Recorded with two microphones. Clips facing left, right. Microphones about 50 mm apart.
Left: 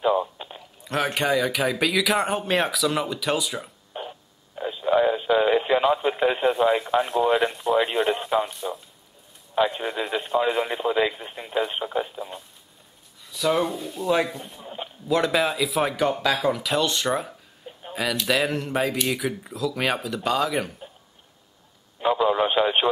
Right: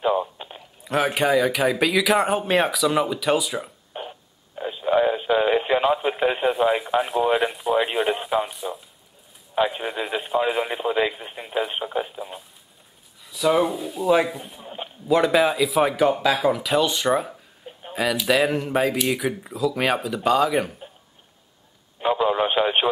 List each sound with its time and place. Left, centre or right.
0.0 s speech: centre
22.0 s speech: centre